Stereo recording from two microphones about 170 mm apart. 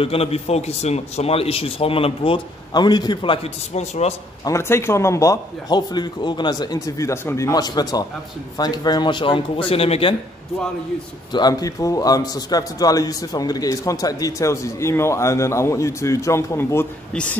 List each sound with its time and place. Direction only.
0.0 s a man's voice: 35° left (ahead or behind)
4.5 s a man's voice: 15° left (ahead or behind); by 10.1 s 35° left (ahead or behind)
11.3 s a man's voice: 25° left (ahead or behind)